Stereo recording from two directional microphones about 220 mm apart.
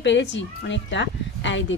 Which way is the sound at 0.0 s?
55° left (ahead or behind).